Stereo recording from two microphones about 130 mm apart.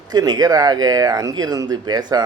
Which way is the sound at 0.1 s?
30° right (ahead or behind).